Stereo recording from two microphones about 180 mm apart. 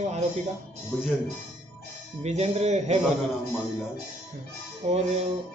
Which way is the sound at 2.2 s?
35° right (ahead or behind).